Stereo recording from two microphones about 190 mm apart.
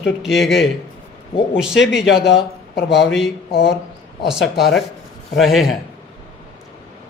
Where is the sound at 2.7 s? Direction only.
65° left (ahead or behind).